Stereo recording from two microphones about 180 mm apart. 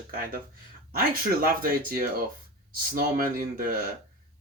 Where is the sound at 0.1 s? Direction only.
55° right (ahead or behind).